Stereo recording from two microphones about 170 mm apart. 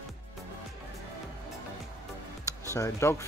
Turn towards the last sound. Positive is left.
turn(degrees=15)  # may be behind; listen again after turning